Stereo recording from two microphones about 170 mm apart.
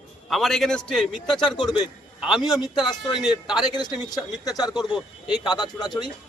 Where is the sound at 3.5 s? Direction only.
25° left (ahead or behind).